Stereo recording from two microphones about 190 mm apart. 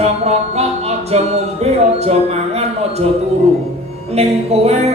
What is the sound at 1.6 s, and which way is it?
Speech, 35° right (ahead or behind).